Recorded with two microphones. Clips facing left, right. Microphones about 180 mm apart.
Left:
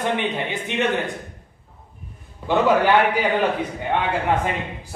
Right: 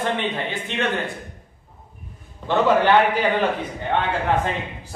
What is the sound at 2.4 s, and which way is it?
A man's voice, 10° left (ahead or behind).